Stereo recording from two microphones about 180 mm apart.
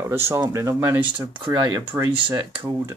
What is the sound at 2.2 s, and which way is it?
Speech, 25° right (ahead or behind).